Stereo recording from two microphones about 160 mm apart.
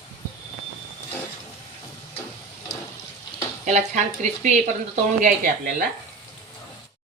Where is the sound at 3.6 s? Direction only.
45° right (ahead or behind).